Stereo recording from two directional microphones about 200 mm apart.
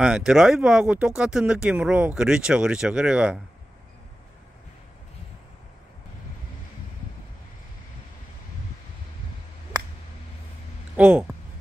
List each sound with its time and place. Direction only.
0.0 s speech: 5° right (ahead or behind)
11.0 s speech: 5° right (ahead or behind)